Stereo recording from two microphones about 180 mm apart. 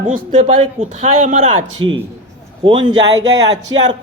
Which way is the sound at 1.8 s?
25° right (ahead or behind).